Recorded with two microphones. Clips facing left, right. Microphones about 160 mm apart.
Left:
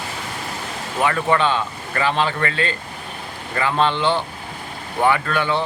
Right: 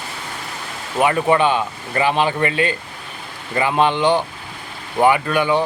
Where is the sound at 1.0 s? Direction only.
20° right (ahead or behind).